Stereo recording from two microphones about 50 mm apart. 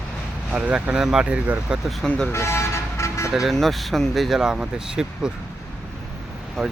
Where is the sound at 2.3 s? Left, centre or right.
Left.